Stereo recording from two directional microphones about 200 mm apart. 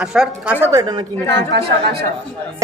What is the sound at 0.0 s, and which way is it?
A woman's voice, 5° right (ahead or behind).